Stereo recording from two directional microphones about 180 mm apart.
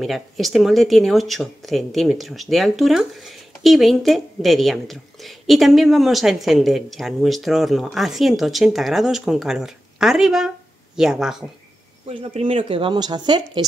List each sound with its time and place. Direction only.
0.0 s speech: centre (ahead or behind)
12.1 s speech: 30° right (ahead or behind)